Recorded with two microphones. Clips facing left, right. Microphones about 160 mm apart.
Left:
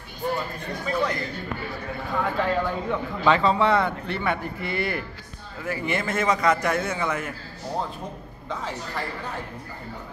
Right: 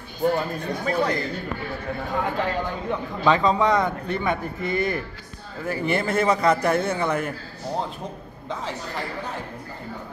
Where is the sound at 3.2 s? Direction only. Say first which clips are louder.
Right 1 dB; 15° right (ahead or behind).